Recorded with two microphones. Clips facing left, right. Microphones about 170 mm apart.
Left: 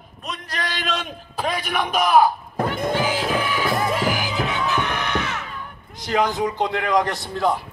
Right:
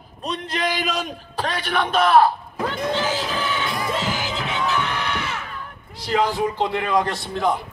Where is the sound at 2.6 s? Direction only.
50° left (ahead or behind).